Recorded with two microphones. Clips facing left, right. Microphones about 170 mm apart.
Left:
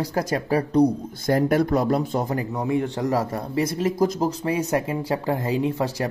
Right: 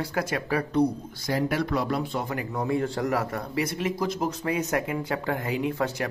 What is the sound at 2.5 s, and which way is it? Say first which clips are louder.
Speech: right 1 dB; 15° left (ahead or behind).